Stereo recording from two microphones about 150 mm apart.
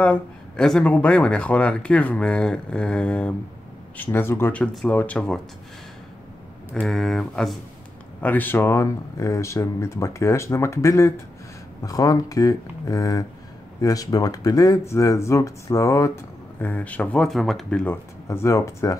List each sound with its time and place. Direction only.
0.0 s speech: 5° left (ahead or behind)
6.7 s speech: centre (ahead or behind); by 18.9 s 20° left (ahead or behind)